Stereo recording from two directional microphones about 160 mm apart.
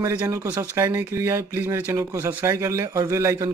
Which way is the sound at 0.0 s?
15° right (ahead or behind).